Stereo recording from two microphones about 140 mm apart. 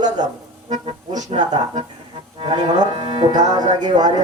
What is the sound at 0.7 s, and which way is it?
Speech, 55° right (ahead or behind).